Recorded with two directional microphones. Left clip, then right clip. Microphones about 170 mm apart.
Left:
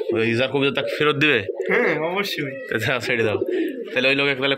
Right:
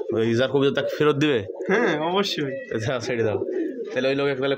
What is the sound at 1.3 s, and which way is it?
Speech, 15° right (ahead or behind).